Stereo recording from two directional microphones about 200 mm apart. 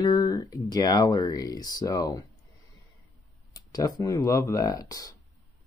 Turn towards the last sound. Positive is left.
turn(degrees=20)  # may be behind; listen again after turning